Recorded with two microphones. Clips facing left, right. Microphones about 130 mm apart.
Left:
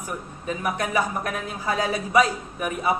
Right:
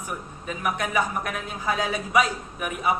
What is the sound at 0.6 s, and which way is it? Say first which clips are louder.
A man's voice: even; 35° left (ahead or behind).